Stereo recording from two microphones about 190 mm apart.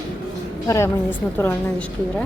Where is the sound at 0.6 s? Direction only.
15° left (ahead or behind).